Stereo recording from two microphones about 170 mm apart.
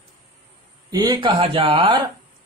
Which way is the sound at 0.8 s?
25° right (ahead or behind).